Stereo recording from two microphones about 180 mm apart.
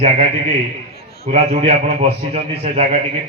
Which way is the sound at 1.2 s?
35° right (ahead or behind).